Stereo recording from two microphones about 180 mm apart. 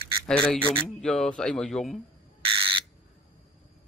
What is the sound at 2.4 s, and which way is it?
Squawk, 30° right (ahead or behind).